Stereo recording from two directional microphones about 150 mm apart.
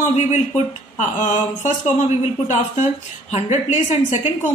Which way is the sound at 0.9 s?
55° left (ahead or behind).